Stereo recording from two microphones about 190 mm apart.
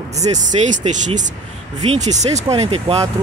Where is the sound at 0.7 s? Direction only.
40° right (ahead or behind).